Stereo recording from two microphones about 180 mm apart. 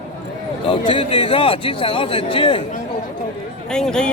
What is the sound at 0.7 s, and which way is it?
A man's voice, 30° left (ahead or behind).